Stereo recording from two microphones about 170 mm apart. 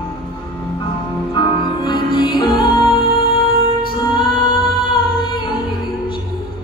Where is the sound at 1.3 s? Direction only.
25° left (ahead or behind).